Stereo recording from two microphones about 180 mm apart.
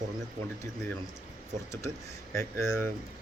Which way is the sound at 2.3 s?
15° left (ahead or behind).